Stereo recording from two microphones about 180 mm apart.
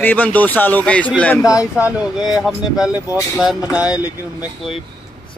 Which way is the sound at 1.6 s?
5° right (ahead or behind).